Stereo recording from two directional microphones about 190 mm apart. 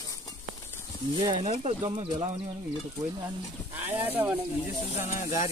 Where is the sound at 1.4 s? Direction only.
35° right (ahead or behind).